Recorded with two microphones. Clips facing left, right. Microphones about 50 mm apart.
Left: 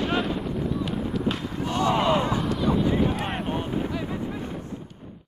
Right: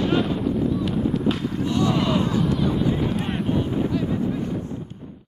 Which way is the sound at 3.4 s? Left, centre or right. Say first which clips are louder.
Right 4 dB; centre.